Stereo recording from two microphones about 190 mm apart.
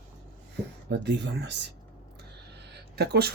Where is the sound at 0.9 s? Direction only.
65° right (ahead or behind).